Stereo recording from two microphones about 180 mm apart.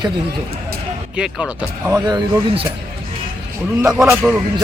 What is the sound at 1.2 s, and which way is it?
Speech, 5° right (ahead or behind).